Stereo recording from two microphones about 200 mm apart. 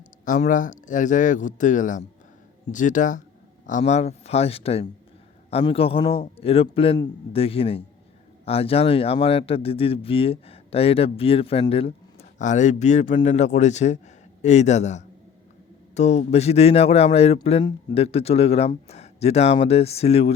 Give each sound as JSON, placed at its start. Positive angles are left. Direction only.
{"t": 0.3, "sound": "a man's voice", "side_deg": 40}